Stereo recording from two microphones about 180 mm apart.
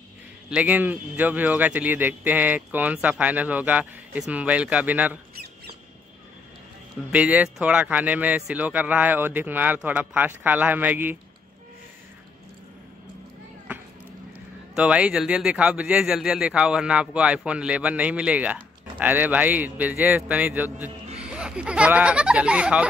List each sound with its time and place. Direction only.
0.5 s speech: 10° right (ahead or behind)
7.1 s speech: 10° right (ahead or behind)
14.8 s speech: 5° right (ahead or behind)